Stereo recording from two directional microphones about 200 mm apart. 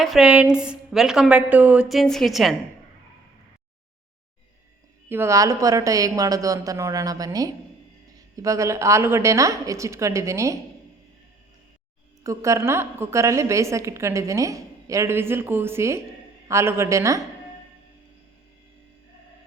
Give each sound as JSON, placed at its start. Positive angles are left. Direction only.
{"t": 0.0, "sound": "a woman's voice", "side_deg": 0}
{"t": 5.0, "sound": "a woman's voice", "side_deg": -10}
{"t": 12.2, "sound": "a woman's voice", "side_deg": -15}